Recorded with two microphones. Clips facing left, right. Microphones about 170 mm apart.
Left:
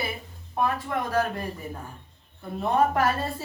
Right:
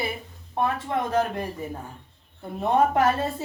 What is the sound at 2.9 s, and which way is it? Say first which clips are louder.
Speech: right 3 dB; 20° right (ahead or behind).